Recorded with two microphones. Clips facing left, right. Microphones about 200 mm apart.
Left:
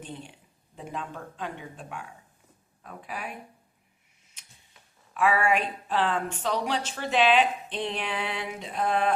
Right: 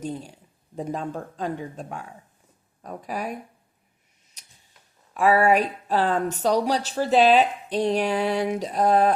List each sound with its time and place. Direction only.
0.0 s speech: 40° right (ahead or behind)
5.1 s speech: 40° right (ahead or behind)